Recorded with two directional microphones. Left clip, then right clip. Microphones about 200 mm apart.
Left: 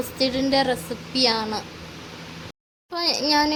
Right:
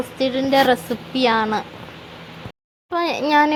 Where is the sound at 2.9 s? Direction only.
15° right (ahead or behind).